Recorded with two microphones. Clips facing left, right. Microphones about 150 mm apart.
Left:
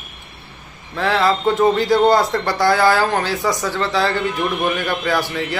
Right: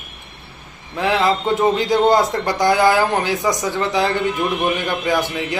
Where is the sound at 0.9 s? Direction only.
20° right (ahead or behind).